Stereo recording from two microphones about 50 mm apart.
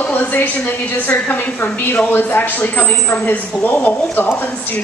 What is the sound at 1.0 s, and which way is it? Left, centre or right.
Speech, left.